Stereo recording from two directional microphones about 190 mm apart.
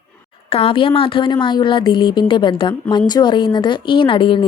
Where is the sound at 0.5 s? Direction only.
30° left (ahead or behind).